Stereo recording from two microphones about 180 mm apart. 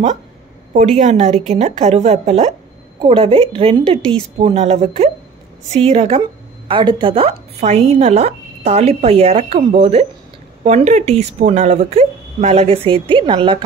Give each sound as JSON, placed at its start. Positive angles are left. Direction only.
{"t": 0.7, "sound": "a woman's voice", "side_deg": -40}